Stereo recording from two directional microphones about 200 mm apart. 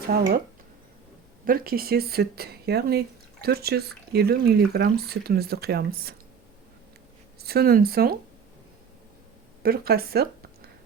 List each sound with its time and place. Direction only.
0.1 s speech: 45° right (ahead or behind)
1.5 s speech: 45° right (ahead or behind)
7.3 s speech: 50° right (ahead or behind)
9.6 s speech: 50° right (ahead or behind)